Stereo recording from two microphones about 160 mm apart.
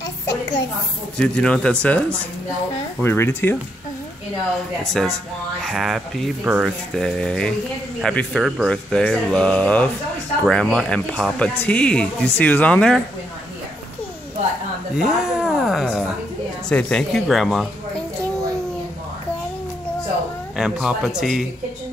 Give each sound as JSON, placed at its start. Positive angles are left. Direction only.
{"t": 1.1, "sound": "speech", "side_deg": 5}
{"t": 5.6, "sound": "speech", "side_deg": 0}
{"t": 15.0, "sound": "a sound", "side_deg": -5}
{"t": 16.6, "sound": "speech", "side_deg": 5}
{"t": 20.5, "sound": "speech", "side_deg": -5}